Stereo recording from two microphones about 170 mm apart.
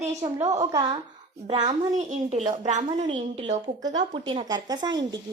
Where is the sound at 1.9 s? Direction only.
45° right (ahead or behind).